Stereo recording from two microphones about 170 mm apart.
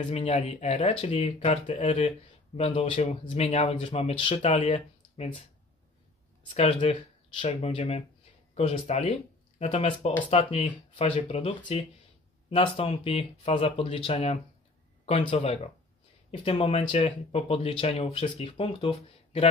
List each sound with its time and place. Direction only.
0.1 s speech: 40° left (ahead or behind)
6.5 s speech: 35° left (ahead or behind)
7.4 s speech: 40° left (ahead or behind)